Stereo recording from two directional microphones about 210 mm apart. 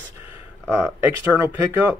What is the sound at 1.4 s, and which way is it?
Speech, 10° right (ahead or behind).